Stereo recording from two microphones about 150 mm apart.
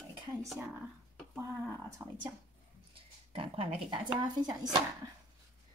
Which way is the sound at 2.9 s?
35° right (ahead or behind).